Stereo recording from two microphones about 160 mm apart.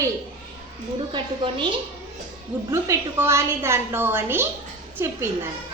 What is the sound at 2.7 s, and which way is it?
A woman's voice, 15° right (ahead or behind).